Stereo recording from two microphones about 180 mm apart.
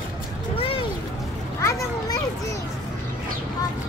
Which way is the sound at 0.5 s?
30° left (ahead or behind).